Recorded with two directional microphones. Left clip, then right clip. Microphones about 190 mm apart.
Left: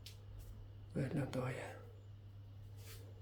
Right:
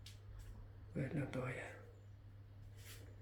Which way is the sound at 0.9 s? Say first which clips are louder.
Left 2 dB; 15° left (ahead or behind).